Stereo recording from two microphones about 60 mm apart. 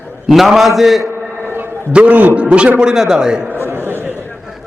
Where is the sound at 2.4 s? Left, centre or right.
Centre.